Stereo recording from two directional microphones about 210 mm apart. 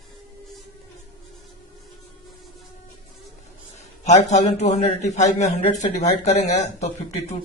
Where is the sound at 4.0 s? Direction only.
35° left (ahead or behind).